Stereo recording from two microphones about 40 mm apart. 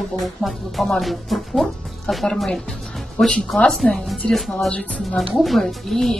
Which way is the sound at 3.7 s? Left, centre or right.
Centre.